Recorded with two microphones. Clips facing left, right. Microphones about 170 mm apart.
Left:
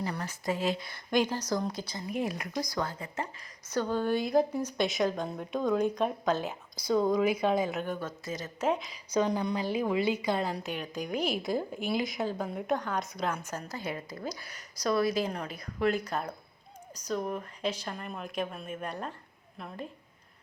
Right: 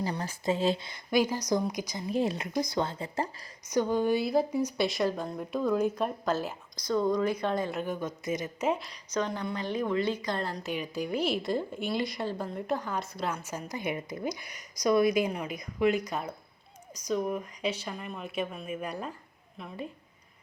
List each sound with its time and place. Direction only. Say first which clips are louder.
0.0 s speech: right 2 dB; 30° right (ahead or behind)
1.1 s speech: right 2 dB; 10° right (ahead or behind)
2.0 s speech: right 4 dB; 30° right (ahead or behind)
3.7 s a woman's voice: right 3 dB; 15° right (ahead or behind); by 7.9 s 5° left (ahead or behind)
7.9 s speech: right 3 dB; 15° right (ahead or behind)
8.6 s a woman's voice: left 1 dB; centre (ahead or behind)
9.0 s a woman's voice: left 3 dB; 10° left (ahead or behind)